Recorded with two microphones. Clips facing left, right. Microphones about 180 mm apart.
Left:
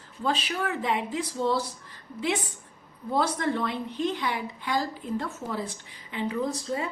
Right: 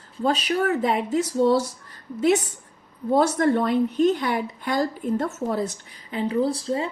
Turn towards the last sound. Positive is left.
turn(degrees=-30)  # may be behind; listen again after turning